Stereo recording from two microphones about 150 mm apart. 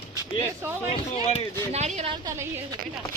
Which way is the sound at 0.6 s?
15° right (ahead or behind).